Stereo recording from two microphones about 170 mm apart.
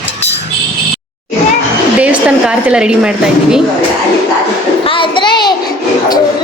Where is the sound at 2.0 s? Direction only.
10° right (ahead or behind).